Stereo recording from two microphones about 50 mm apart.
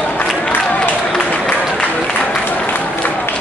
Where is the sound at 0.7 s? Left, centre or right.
Left.